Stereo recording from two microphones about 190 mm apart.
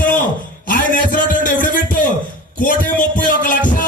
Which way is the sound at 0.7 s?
45° left (ahead or behind).